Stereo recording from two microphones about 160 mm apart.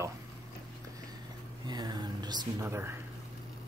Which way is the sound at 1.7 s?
25° right (ahead or behind).